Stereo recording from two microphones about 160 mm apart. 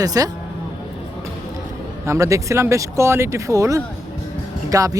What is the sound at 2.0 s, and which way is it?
Speech, 20° right (ahead or behind).